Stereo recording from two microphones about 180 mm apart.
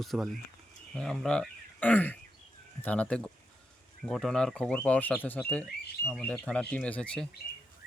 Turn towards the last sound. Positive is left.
turn(degrees=5)  # may be behind; listen again after turning